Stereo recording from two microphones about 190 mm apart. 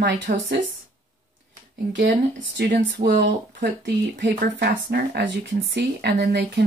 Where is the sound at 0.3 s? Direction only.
55° right (ahead or behind).